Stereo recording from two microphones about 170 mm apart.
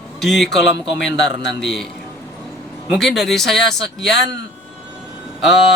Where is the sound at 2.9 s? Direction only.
Centre (ahead or behind).